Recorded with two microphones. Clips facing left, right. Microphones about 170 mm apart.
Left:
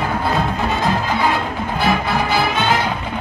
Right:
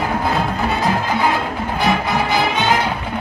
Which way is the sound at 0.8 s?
10° right (ahead or behind).